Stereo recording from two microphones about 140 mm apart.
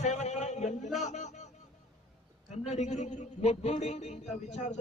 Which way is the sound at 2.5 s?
50° left (ahead or behind).